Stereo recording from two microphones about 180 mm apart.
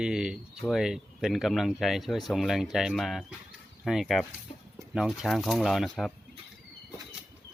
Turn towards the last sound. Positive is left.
turn(degrees=0)  # may be behind; listen again after turning